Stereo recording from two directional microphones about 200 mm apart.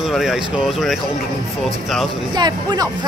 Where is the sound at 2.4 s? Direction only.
20° right (ahead or behind).